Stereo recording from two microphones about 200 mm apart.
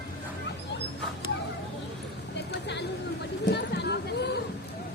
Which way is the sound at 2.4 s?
60° left (ahead or behind).